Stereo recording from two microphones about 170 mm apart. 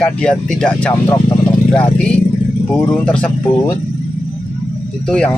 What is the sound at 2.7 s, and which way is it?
Speech, 5° left (ahead or behind).